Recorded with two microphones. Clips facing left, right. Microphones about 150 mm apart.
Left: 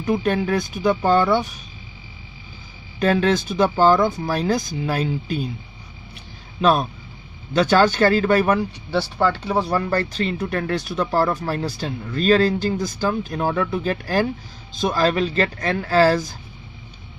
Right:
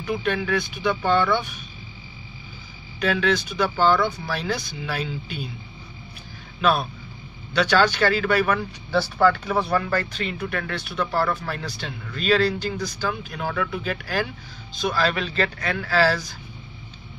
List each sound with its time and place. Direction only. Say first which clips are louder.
0.2 s speech: left 3 dB; 40° left (ahead or behind)
3.0 s speech: left 4 dB; 45° left (ahead or behind)
6.6 s speech: left 4 dB; 40° left (ahead or behind)
8.5 s speech: left 2 dB; 25° left (ahead or behind); by 16.3 s 45° left (ahead or behind)